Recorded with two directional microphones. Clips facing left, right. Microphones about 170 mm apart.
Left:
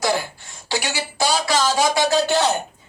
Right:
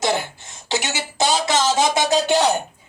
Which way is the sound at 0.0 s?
20° right (ahead or behind).